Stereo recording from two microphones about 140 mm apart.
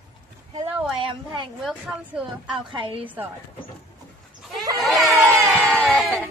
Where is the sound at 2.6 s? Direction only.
35° right (ahead or behind).